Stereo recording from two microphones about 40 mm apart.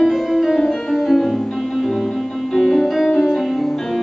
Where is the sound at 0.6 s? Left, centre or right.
Centre.